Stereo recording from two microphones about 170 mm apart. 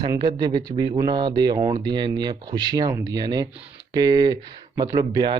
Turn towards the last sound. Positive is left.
turn(degrees=-25)  # may be behind; listen again after turning